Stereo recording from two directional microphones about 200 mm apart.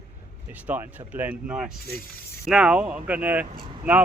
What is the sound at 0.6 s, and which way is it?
Speech, 10° right (ahead or behind).